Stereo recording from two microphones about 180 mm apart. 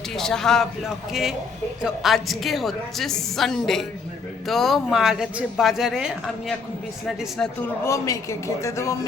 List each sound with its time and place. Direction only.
0.2 s speech: centre (ahead or behind)
7.9 s a man's voice: 15° left (ahead or behind)